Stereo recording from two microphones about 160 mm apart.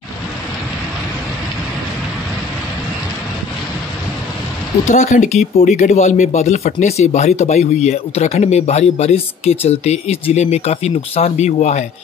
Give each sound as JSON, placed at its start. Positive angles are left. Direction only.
{"t": 4.8, "sound": "speech", "side_deg": 45}